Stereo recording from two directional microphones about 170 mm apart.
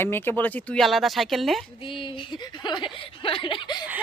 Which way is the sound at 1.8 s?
30° left (ahead or behind).